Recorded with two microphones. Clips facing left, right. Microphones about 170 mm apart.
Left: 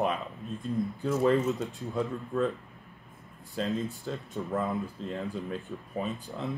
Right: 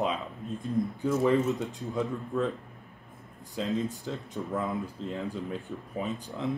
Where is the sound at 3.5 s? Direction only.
20° right (ahead or behind).